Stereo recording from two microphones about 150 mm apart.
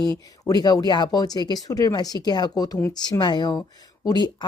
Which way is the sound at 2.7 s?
10° left (ahead or behind).